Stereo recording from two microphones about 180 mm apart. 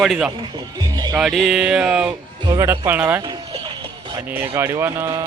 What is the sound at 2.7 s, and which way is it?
Speech, 10° right (ahead or behind).